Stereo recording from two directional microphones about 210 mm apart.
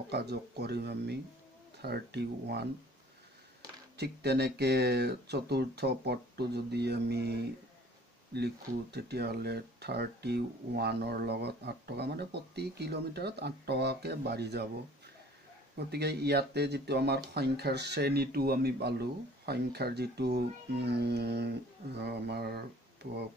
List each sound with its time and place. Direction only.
0.1 s speech: 50° right (ahead or behind)
3.9 s speech: 50° right (ahead or behind)
8.9 s speech: 50° right (ahead or behind)
15.7 s speech: 50° right (ahead or behind)